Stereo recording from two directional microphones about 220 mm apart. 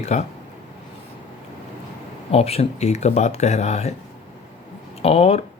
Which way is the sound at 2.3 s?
30° left (ahead or behind).